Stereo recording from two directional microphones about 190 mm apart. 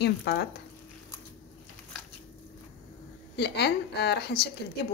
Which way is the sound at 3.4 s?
60° left (ahead or behind).